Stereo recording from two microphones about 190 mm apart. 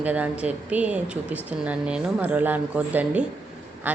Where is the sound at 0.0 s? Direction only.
10° right (ahead or behind).